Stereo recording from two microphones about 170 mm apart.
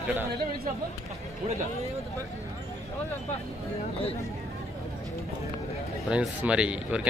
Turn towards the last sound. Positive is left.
turn(degrees=-5)  # may be behind; listen again after turning